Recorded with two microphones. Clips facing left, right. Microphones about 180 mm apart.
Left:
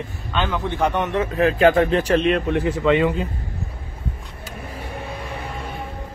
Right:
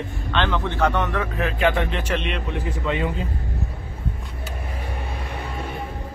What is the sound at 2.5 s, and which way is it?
Speech, 80° left.